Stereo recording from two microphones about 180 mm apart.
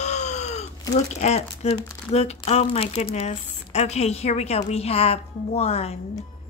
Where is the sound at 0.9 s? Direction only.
40° left (ahead or behind).